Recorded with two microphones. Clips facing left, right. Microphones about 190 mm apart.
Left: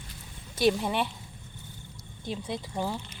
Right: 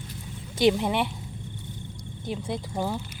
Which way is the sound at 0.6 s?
15° right (ahead or behind).